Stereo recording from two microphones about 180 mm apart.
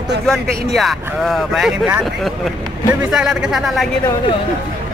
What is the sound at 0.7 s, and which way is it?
Speech, centre (ahead or behind).